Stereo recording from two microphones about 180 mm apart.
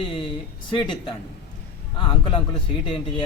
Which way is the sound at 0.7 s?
25° left (ahead or behind).